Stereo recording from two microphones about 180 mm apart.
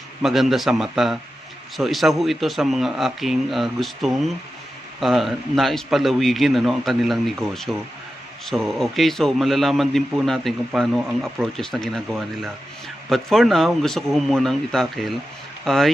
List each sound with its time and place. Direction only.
0.2 s a man's voice: centre (ahead or behind)